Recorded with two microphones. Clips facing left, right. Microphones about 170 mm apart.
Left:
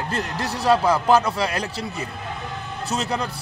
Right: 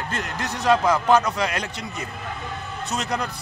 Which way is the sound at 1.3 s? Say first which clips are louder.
Left 1 dB; 35° left (ahead or behind).